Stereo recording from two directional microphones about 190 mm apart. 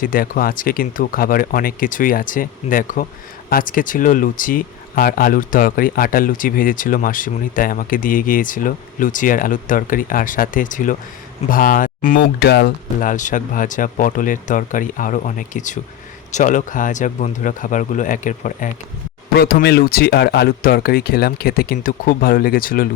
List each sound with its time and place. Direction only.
0.0 s speech: 50° left (ahead or behind)
19.3 s speech: 55° left (ahead or behind)